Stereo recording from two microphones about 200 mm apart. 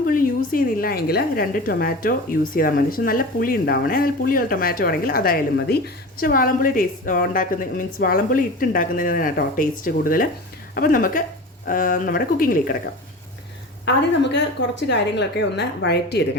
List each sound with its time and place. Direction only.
0.1 s a woman's voice: 45° left (ahead or behind)
13.8 s a woman's voice: 60° left (ahead or behind)